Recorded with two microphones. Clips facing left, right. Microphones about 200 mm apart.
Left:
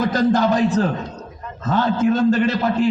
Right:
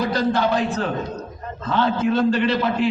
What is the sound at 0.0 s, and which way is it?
A man's voice, 45° left (ahead or behind).